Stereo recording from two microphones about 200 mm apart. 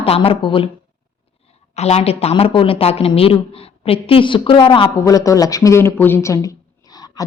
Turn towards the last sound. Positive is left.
turn(degrees=20)  # may be behind; listen again after turning